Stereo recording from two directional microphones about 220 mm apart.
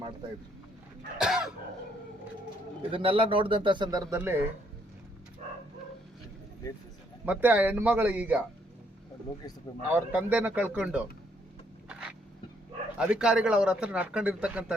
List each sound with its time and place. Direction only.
1.2 s a man's voice: centre (ahead or behind)
2.9 s speech: 25° right (ahead or behind)
7.3 s speech: 5° right (ahead or behind)
9.9 s speech: 5° right (ahead or behind)
13.0 s a man's voice: 5° right (ahead or behind)